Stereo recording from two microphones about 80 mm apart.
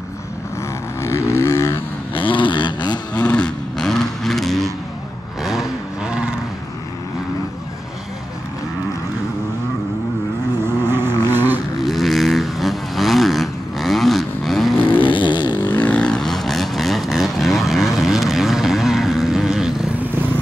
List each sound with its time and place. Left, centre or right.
1.0 s vehicle: left
2.1 s vehicle: left
3.2 s vehicle: centre
10.6 s vehicle: right
11.8 s vehicle: centre
15.0 s vehicle: left
15.7 s vehicle: centre